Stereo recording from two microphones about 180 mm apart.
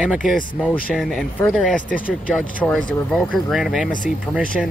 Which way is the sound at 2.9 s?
5° left (ahead or behind).